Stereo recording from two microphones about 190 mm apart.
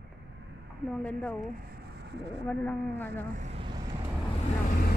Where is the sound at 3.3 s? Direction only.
35° right (ahead or behind).